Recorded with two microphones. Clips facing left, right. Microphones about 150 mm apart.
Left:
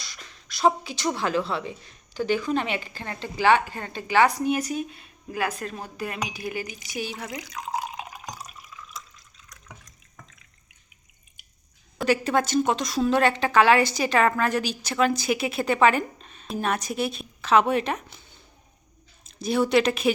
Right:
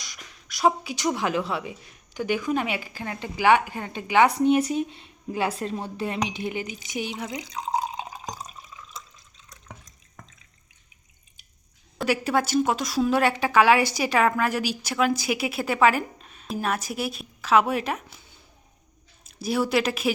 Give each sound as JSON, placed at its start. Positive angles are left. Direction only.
{"t": 0.0, "sound": "speech", "side_deg": -15}
{"t": 12.0, "sound": "speech", "side_deg": -10}
{"t": 19.4, "sound": "a woman's voice", "side_deg": -5}